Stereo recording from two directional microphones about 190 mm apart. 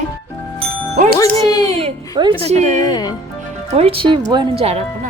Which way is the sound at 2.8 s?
20° left (ahead or behind).